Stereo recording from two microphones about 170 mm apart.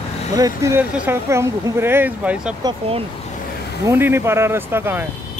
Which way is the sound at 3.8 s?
15° right (ahead or behind).